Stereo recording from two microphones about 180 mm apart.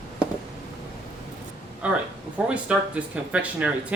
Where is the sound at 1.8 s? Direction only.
5° right (ahead or behind).